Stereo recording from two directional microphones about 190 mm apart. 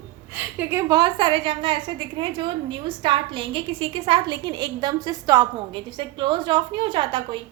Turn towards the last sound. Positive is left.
turn(degrees=-25)  # may be behind; listen again after turning